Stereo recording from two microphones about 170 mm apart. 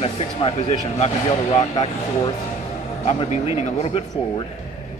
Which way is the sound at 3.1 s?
40° left (ahead or behind).